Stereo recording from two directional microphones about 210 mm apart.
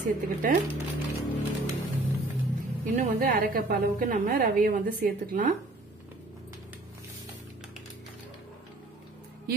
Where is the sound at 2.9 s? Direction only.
45° right (ahead or behind).